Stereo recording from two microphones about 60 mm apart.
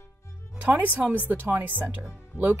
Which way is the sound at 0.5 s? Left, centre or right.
Right.